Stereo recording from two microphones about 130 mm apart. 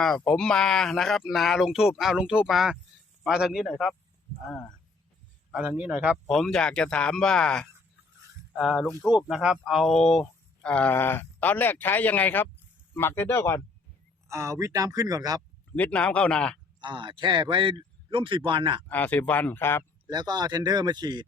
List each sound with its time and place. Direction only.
0.0 s speech: 5° left (ahead or behind)
5.5 s a man's voice: 10° right (ahead or behind)
6.2 s speech: 5° left (ahead or behind)
14.3 s speech: 20° right (ahead or behind)
15.7 s speech: 10° left (ahead or behind)
16.8 s a man's voice: 40° right (ahead or behind)
18.9 s speech: 15° left (ahead or behind)
20.1 s a man's voice: 30° right (ahead or behind)